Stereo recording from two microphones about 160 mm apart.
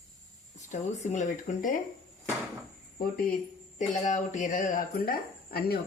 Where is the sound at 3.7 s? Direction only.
50° left (ahead or behind).